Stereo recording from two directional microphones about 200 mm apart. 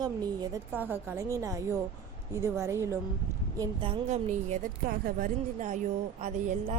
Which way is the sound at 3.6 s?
25° right (ahead or behind).